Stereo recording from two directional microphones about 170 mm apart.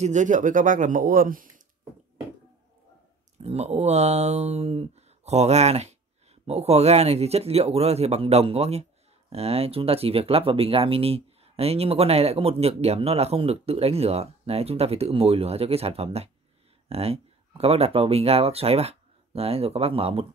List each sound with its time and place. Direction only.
0.0 s speech: 45° right (ahead or behind)
3.4 s speech: 40° right (ahead or behind)